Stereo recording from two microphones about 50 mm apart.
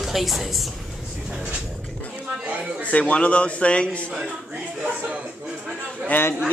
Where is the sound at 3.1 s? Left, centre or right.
Left.